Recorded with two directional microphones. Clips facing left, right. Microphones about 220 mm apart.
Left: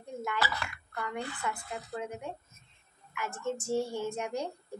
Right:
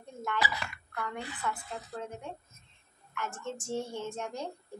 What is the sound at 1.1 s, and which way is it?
A woman's voice, 10° left (ahead or behind).